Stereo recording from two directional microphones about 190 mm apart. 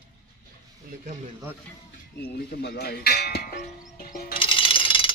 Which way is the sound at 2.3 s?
55° left (ahead or behind).